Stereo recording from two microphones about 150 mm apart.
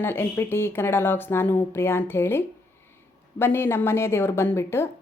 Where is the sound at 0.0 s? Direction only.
15° left (ahead or behind).